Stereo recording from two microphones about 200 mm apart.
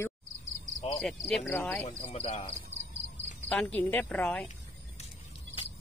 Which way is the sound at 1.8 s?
30° left (ahead or behind).